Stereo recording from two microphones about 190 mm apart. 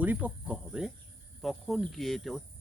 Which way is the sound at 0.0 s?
10° right (ahead or behind).